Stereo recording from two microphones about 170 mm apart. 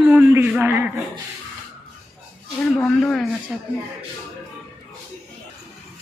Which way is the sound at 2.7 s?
5° left (ahead or behind).